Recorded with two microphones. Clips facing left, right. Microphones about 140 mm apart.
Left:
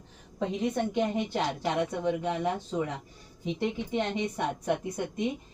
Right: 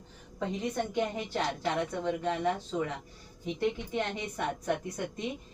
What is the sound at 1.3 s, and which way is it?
A woman's voice, 10° left (ahead or behind).